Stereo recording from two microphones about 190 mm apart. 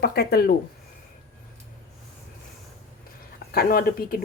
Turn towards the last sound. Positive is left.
turn(degrees=50)  # may be behind; listen again after turning